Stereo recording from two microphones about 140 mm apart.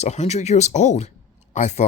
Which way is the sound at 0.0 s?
55° left (ahead or behind).